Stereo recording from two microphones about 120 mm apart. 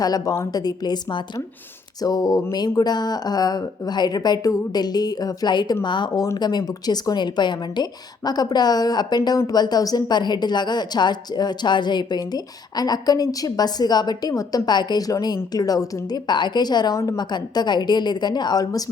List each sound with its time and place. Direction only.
0.0 s speech: 30° left (ahead or behind)